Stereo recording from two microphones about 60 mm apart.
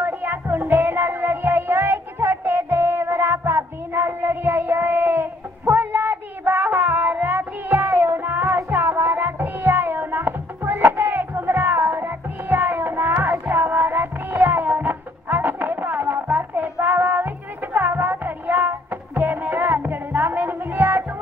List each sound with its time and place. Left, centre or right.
0.0 s music: right